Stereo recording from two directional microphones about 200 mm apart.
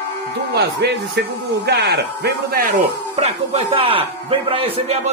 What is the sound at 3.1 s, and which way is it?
Speech, 30° right (ahead or behind).